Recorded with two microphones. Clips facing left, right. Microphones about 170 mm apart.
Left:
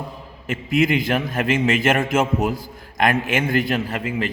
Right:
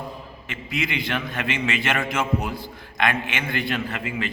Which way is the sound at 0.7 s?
45° left (ahead or behind).